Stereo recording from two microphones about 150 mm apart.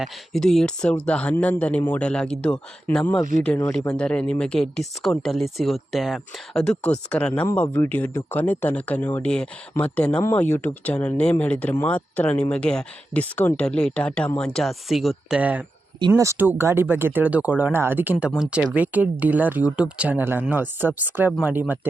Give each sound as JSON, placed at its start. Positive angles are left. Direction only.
{"t": 0.0, "sound": "speech", "side_deg": 5}